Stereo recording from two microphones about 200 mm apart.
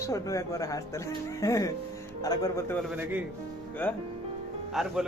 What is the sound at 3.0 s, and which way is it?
Speech, 10° right (ahead or behind).